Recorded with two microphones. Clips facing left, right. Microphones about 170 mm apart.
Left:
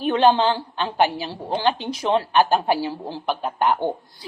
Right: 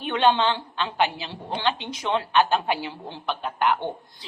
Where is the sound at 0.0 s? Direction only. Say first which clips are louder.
Left 4 dB; 35° left (ahead or behind).